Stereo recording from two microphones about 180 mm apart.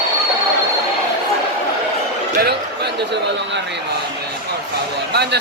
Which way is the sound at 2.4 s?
65° right (ahead or behind).